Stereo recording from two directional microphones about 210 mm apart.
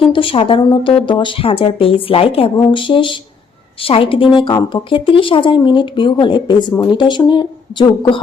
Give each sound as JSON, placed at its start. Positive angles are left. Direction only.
{"t": 0.0, "sound": "a woman's voice", "side_deg": 25}